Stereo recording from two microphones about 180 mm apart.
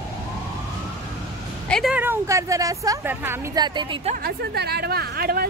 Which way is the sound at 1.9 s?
15° right (ahead or behind).